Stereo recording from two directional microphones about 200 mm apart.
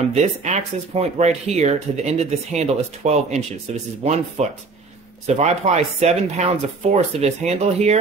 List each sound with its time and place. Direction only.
0.1 s speech: 35° right (ahead or behind)